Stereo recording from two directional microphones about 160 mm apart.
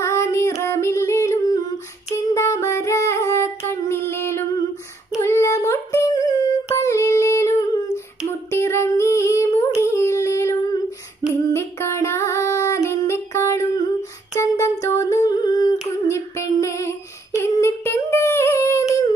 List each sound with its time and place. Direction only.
0.0 s female singing: 15° left (ahead or behind)
2.3 s music: 15° left (ahead or behind)
5.1 s a sound: 15° left (ahead or behind)
8.3 s female singing: 15° left (ahead or behind)
14.4 s humming: 15° left (ahead or behind)
16.1 s a sound: 20° left (ahead or behind)
17.4 s humming: 15° left (ahead or behind)